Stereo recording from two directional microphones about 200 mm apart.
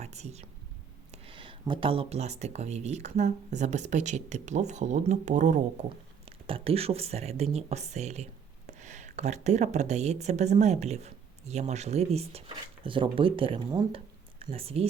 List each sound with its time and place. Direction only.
0.0 s speech: 35° right (ahead or behind)